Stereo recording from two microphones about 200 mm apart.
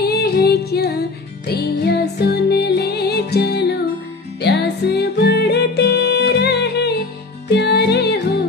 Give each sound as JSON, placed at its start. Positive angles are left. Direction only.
{"t": 0.0, "sound": "music", "side_deg": 50}